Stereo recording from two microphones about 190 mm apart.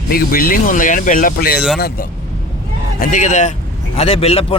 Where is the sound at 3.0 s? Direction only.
40° left (ahead or behind).